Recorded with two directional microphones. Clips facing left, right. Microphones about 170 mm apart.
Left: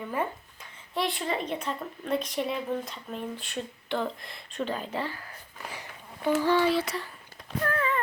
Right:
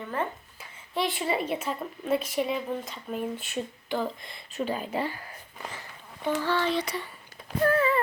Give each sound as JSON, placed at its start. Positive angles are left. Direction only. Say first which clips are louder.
{"t": 0.6, "sound": "a woman's voice", "louder": "right 1 dB", "side_deg": 0}
{"t": 5.7, "sound": "speech", "louder": "left 1 dB", "side_deg": 10}
{"t": 7.6, "sound": "a sound", "louder": "right 5 dB", "side_deg": -30}